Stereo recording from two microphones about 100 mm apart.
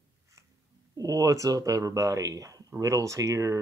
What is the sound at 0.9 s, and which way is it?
Speech, 35° right (ahead or behind).